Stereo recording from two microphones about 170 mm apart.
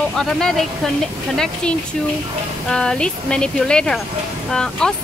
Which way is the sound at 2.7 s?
5° left (ahead or behind).